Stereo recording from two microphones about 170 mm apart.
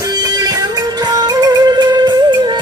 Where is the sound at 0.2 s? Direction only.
20° right (ahead or behind).